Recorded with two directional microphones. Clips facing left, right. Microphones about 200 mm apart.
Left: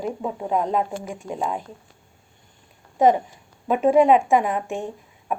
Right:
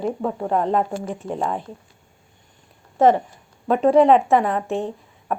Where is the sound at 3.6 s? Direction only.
5° left (ahead or behind).